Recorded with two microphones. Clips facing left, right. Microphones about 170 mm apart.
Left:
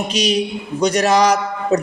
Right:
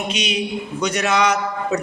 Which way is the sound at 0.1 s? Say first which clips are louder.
Left 5 dB; 35° left (ahead or behind).